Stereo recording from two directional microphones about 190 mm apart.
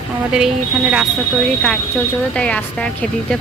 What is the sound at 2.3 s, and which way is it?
Speech, 5° left (ahead or behind).